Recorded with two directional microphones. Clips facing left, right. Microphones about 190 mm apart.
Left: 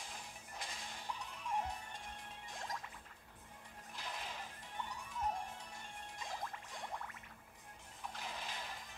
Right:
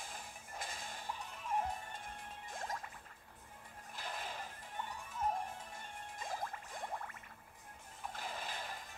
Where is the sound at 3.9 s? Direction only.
50° right (ahead or behind).